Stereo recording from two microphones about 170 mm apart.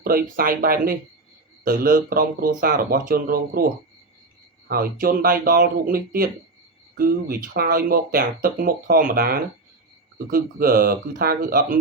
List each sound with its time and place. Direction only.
0.0 s speech: 60° right (ahead or behind)
4.7 s speech: 60° right (ahead or behind)